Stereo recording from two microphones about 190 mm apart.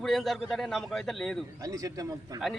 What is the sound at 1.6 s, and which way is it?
Speech, 15° right (ahead or behind).